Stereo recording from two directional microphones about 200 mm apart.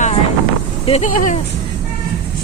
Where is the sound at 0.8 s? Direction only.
35° left (ahead or behind).